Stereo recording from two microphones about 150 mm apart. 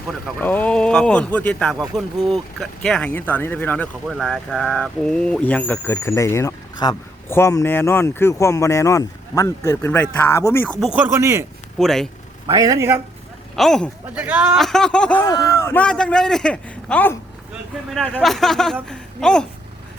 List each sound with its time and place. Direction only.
0.4 s a man's voice: 10° left (ahead or behind)
3.1 s speech: 15° left (ahead or behind)
10.8 s speech: 5° right (ahead or behind)
11.8 s a man's voice: centre (ahead or behind)
12.5 s a man's voice: 25° right (ahead or behind)
13.6 s a man's voice: 5° left (ahead or behind)
14.2 s speech: 10° right (ahead or behind)
14.5 s a man's voice: 5° left (ahead or behind)
15.2 s a man's voice: 25° left (ahead or behind); by 19.5 s 5° left (ahead or behind)